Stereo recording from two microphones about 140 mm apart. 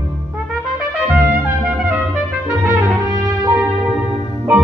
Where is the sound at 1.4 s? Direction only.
10° right (ahead or behind).